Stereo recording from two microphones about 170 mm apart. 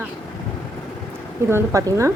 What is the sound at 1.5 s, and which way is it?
Speech, 20° right (ahead or behind).